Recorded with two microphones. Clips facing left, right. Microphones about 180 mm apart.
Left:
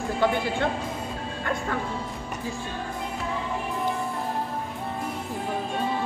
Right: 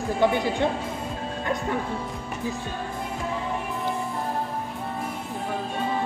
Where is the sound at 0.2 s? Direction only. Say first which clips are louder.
Right 2 dB; 15° right (ahead or behind).